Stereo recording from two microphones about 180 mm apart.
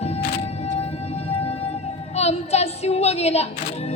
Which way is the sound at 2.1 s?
35° left (ahead or behind).